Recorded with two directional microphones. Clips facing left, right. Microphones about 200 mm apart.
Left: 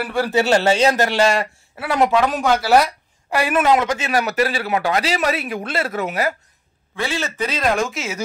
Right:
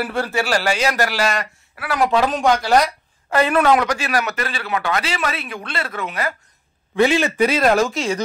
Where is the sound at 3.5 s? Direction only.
20° left (ahead or behind); by 6.1 s 40° left (ahead or behind).